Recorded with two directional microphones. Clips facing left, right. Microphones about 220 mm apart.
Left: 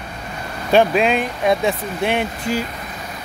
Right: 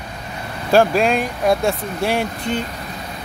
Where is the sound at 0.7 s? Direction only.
Centre (ahead or behind).